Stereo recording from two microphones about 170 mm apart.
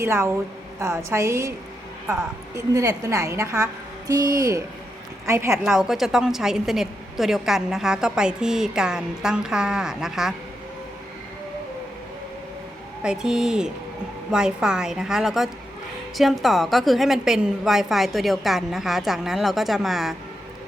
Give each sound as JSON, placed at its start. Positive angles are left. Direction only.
{"t": 0.0, "sound": "a woman's voice", "side_deg": -15}
{"t": 2.7, "sound": "a woman's voice", "side_deg": -20}
{"t": 5.6, "sound": "a woman's voice", "side_deg": -5}
{"t": 13.0, "sound": "a woman's voice", "side_deg": -5}